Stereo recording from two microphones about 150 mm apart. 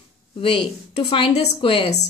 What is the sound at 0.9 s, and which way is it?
A woman's voice, 35° left (ahead or behind).